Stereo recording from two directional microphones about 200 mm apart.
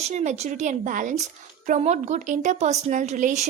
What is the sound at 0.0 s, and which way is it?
A woman's voice, 35° right (ahead or behind).